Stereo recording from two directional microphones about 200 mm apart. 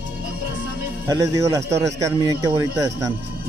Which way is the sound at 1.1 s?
15° right (ahead or behind).